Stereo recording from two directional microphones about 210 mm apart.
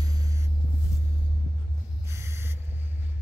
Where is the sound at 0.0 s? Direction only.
20° right (ahead or behind).